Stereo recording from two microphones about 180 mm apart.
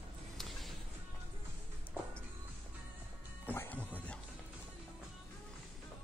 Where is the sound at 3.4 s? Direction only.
10° left (ahead or behind).